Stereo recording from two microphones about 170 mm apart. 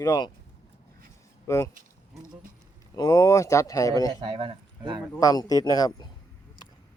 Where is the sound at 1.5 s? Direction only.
15° left (ahead or behind).